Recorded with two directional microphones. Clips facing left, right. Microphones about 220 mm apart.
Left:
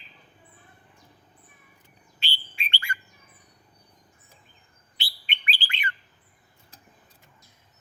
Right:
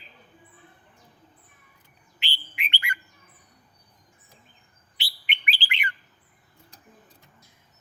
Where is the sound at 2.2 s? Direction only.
15° right (ahead or behind).